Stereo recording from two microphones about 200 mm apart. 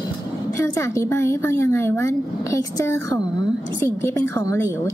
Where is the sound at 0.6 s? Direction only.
15° left (ahead or behind).